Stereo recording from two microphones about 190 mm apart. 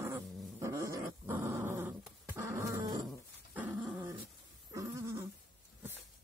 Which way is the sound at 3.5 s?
5° right (ahead or behind).